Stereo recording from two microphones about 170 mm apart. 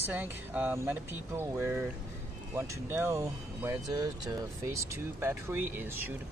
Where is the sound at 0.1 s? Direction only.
10° right (ahead or behind).